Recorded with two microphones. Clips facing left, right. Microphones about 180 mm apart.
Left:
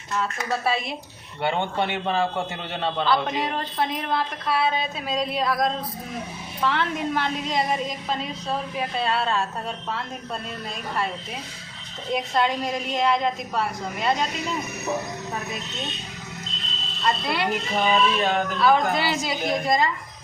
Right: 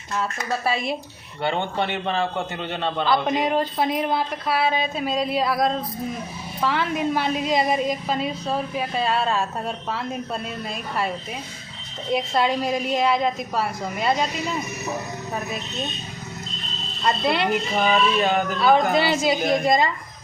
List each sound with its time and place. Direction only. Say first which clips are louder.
0.2 s a woman's voice: right 1 dB; centre (ahead or behind)
1.4 s speech: even; 15° left (ahead or behind)
3.0 s a woman's voice: right 3 dB; 10° right (ahead or behind)
7.1 s a woman's voice: right 4 dB; 10° right (ahead or behind)
12.1 s a woman's voice: right 2 dB; 5° right (ahead or behind)
17.2 s a woman's voice: right 4 dB; 25° right (ahead or behind)
17.5 s a woman's voice: right 2 dB; 5° right (ahead or behind)
18.6 s a woman's voice: right 2 dB; 20° right (ahead or behind)